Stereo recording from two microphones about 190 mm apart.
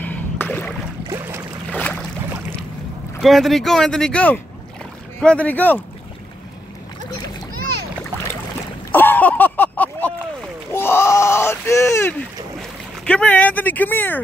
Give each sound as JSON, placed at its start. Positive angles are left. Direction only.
{"t": 0.0, "sound": "boat", "side_deg": 10}
{"t": 1.0, "sound": "boat", "side_deg": -15}
{"t": 1.7, "sound": "boat", "side_deg": 5}
{"t": 3.2, "sound": "speech", "side_deg": 0}
{"t": 8.9, "sound": "a sound", "side_deg": 10}
{"t": 13.0, "sound": "speech", "side_deg": 5}